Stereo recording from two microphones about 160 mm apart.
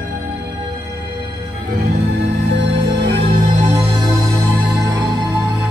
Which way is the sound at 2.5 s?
90° right.